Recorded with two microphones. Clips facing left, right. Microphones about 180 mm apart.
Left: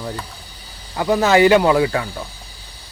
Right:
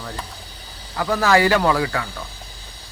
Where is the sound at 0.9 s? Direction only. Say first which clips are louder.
Left 3 dB; 20° left (ahead or behind).